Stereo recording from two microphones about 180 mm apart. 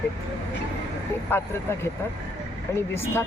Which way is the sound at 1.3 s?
10° left (ahead or behind).